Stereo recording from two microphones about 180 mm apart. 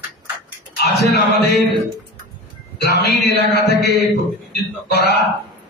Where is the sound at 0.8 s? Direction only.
65° left (ahead or behind).